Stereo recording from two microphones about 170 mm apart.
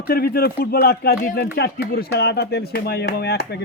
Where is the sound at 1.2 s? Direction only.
50° left (ahead or behind).